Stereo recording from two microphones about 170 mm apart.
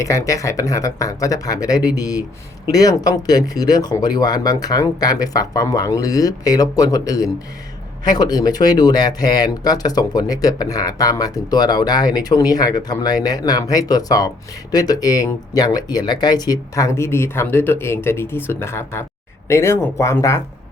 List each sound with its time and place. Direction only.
0.0 s speech: 20° left (ahead or behind)